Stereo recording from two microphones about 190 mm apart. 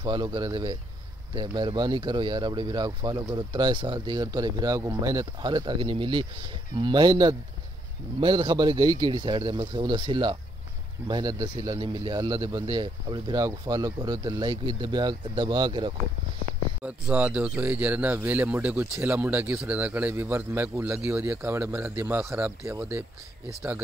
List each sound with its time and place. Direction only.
0.0 s speech: 20° right (ahead or behind)
16.8 s speech: 5° right (ahead or behind)